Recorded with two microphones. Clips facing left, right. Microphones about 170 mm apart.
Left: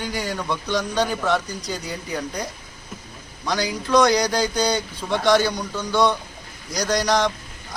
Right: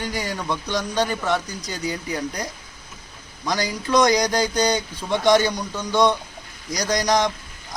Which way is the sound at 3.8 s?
15° right (ahead or behind).